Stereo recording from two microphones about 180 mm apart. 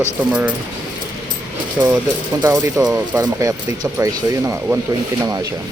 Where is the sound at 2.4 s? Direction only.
20° right (ahead or behind).